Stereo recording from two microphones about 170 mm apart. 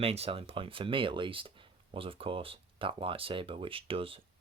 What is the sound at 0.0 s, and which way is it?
Speech, 35° right (ahead or behind).